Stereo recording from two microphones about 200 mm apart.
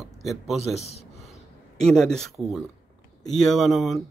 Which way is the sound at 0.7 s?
30° left (ahead or behind).